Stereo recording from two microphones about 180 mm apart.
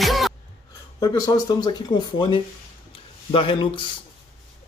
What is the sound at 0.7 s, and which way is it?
Speech, 20° left (ahead or behind).